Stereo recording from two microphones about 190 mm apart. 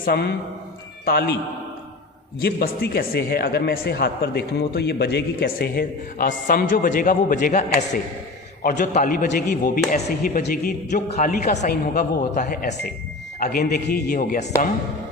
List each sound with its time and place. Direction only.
0.0 s speech: 55° left (ahead or behind)
2.4 s a man's voice: 55° left (ahead or behind)
8.8 s a man's voice: 45° left (ahead or behind)